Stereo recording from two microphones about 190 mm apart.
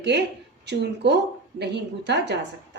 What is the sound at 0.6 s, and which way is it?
A woman's voice, 65° right (ahead or behind).